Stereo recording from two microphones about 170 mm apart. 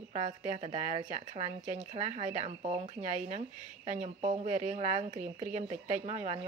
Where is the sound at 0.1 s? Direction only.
40° right (ahead or behind).